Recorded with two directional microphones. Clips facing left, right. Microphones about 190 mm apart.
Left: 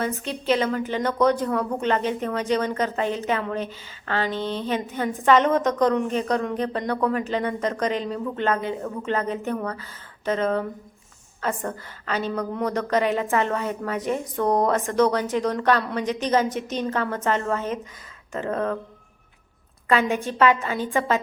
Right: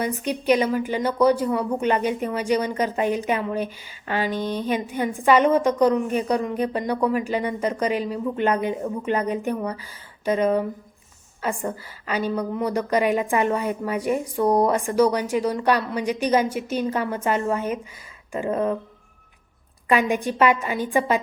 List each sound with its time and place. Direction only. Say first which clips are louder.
0.0 s a woman's voice: right 2 dB; 15° right (ahead or behind)
19.9 s a woman's voice: right 1 dB; 15° right (ahead or behind)